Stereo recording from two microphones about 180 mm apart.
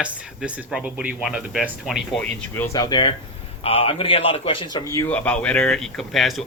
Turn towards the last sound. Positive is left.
turn(degrees=0)  # may be behind; listen again after turning